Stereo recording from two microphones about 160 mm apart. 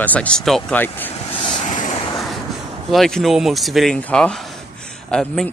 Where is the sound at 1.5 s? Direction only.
50° left (ahead or behind).